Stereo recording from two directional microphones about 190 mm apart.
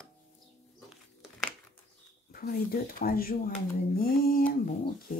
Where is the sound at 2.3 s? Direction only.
50° left (ahead or behind).